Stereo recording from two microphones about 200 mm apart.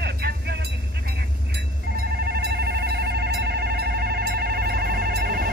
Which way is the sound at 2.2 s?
55° right (ahead or behind).